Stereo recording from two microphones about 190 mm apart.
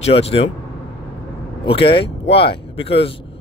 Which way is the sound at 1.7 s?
30° left (ahead or behind).